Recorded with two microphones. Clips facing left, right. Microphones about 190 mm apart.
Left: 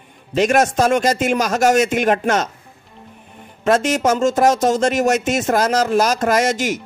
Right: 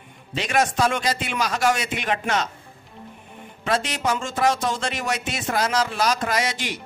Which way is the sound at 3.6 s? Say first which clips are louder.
Left 8 dB; 45° left (ahead or behind).